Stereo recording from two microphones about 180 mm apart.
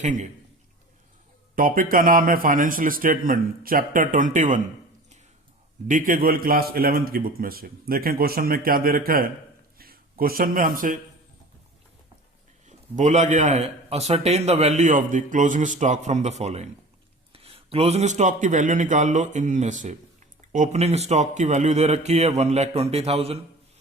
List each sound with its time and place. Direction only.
0.0 s a man's voice: 40° right (ahead or behind)
1.5 s a man's voice: 50° right (ahead or behind)
5.9 s a man's voice: 50° right (ahead or behind)
12.6 s a man's voice: 40° right (ahead or behind)